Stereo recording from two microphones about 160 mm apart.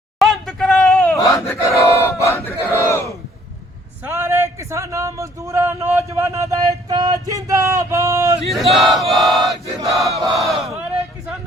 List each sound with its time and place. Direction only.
0.2 s a sound: centre (ahead or behind)
1.1 s battle cry: 20° left (ahead or behind)
4.0 s a man's voice: 15° right (ahead or behind)
8.4 s battle cry: centre (ahead or behind)